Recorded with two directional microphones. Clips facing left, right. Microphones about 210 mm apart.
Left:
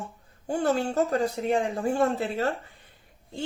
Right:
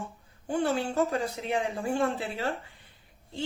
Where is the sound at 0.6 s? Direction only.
45° left (ahead or behind).